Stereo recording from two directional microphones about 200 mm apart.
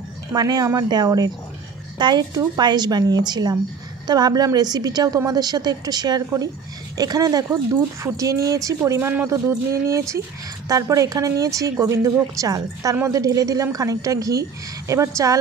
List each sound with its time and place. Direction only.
0.3 s a woman's voice: 20° right (ahead or behind)